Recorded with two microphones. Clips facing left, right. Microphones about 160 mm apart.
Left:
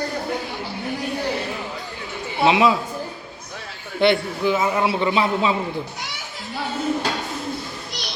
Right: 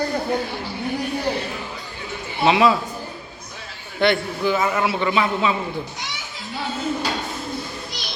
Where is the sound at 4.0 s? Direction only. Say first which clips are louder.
Left 1 dB; 25° left (ahead or behind).